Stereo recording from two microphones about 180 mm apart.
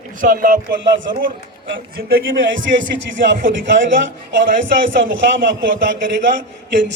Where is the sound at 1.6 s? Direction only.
60° right (ahead or behind).